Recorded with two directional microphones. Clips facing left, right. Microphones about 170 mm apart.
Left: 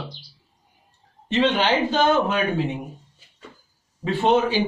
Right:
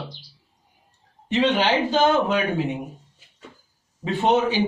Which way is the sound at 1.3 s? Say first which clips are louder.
Even; 15° right (ahead or behind).